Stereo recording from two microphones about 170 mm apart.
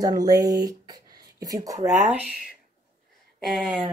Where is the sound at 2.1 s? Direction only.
5° right (ahead or behind).